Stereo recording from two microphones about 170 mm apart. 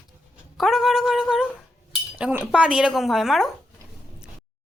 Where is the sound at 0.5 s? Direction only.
Centre (ahead or behind).